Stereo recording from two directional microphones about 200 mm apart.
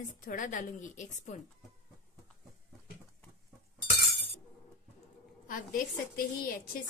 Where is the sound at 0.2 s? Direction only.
40° left (ahead or behind).